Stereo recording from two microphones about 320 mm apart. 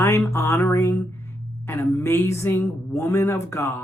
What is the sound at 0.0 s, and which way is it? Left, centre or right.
Speech, centre.